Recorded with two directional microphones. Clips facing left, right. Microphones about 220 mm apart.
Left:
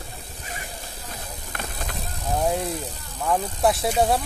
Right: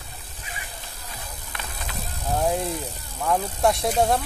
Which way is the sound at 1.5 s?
45° left (ahead or behind).